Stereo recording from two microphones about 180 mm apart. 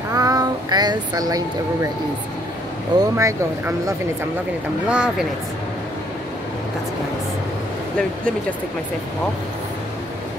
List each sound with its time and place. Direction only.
0.1 s a sound: 20° right (ahead or behind)
3.0 s speech: 15° right (ahead or behind)
4.8 s speech: 5° right (ahead or behind)